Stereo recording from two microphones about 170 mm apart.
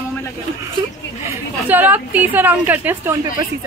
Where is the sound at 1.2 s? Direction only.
10° right (ahead or behind).